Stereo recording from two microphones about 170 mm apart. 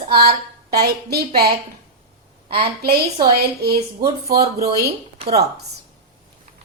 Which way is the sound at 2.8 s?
65° right (ahead or behind).